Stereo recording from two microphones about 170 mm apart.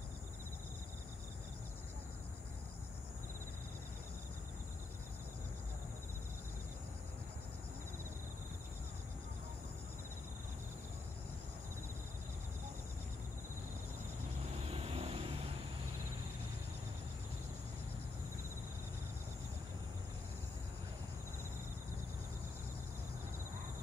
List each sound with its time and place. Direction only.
14.6 s vehicle: 35° right (ahead or behind)